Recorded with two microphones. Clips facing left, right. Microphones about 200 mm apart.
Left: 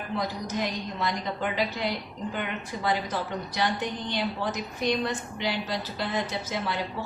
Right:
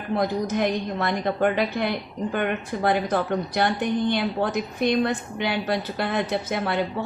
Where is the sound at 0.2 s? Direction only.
55° right (ahead or behind).